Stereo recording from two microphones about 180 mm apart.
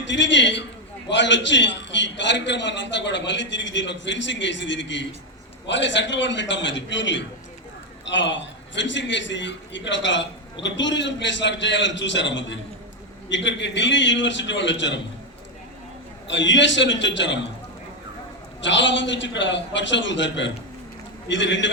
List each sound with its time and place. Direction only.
0.0 s a man's voice: 85° left
16.2 s a man's voice: 90° left
18.6 s a man's voice: 90° left